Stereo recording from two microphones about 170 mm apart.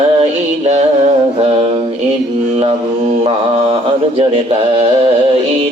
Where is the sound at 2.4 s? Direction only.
35° right (ahead or behind).